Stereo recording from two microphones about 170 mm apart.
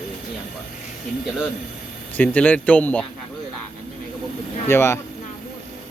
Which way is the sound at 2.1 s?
10° left (ahead or behind).